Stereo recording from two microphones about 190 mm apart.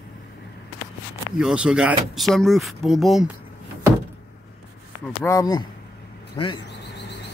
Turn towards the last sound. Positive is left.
turn(degrees=25)  # may be behind; listen again after turning